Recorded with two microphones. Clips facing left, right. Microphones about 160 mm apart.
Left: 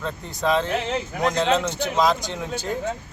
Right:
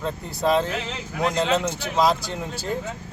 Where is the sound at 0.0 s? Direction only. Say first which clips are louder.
Right 1 dB; 5° right (ahead or behind).